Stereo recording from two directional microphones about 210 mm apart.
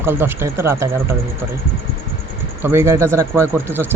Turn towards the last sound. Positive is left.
turn(degrees=-10)  # may be behind; listen again after turning